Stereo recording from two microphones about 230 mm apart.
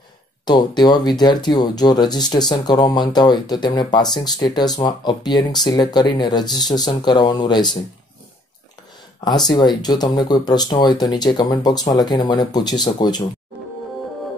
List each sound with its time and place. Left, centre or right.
0.5 s speech: centre
9.5 s speech: centre